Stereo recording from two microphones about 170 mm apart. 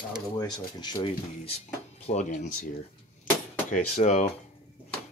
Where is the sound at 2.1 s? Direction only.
45° left (ahead or behind).